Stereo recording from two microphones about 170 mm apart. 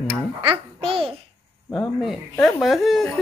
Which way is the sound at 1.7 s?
Centre (ahead or behind).